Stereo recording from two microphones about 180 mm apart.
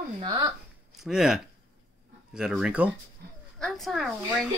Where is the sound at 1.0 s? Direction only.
5° right (ahead or behind).